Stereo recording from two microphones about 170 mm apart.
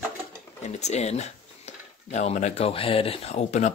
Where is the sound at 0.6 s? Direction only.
40° left (ahead or behind).